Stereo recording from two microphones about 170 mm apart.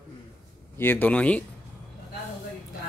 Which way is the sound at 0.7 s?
10° left (ahead or behind).